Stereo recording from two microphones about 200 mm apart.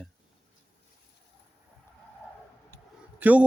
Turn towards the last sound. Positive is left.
turn(degrees=-10)  # may be behind; listen again after turning